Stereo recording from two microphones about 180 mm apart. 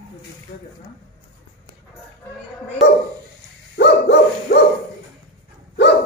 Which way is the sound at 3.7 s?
65° left (ahead or behind).